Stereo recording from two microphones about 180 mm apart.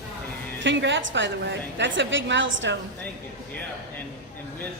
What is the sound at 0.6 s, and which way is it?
A woman's voice, 90° right.